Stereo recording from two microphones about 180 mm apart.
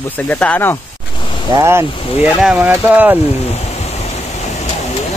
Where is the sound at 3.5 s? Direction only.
35° left (ahead or behind).